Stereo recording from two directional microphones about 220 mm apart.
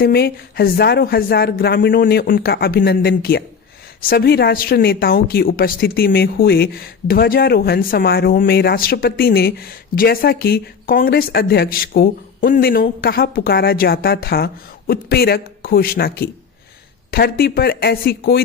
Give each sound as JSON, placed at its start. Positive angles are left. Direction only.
{"t": 0.0, "sound": "a woman's voice", "side_deg": 45}